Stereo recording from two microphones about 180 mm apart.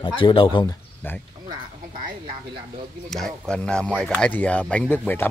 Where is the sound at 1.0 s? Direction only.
10° left (ahead or behind).